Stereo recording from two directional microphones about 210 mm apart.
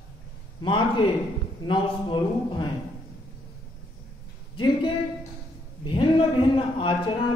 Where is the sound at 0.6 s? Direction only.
25° left (ahead or behind).